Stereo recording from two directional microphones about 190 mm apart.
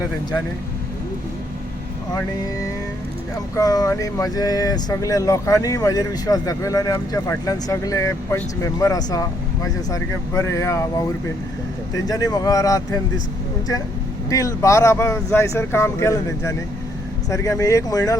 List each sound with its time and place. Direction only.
0.0 s speech: 15° left (ahead or behind)
3.3 s speech: 20° left (ahead or behind)
14.3 s speech: 15° left (ahead or behind)